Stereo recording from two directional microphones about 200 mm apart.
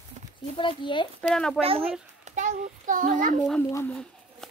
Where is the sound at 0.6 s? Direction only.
25° left (ahead or behind).